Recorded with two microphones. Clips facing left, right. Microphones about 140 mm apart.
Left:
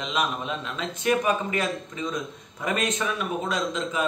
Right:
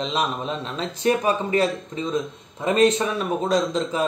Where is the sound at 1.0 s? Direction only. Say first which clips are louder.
Right 3 dB; 30° right (ahead or behind).